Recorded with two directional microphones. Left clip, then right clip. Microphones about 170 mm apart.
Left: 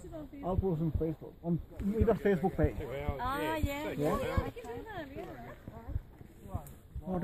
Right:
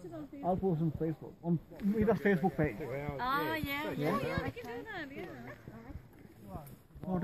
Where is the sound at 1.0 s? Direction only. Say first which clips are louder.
Left 1 dB; 60° left (ahead or behind).